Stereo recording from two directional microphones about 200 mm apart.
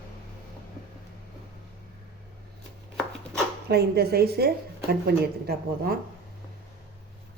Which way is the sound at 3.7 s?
50° right (ahead or behind).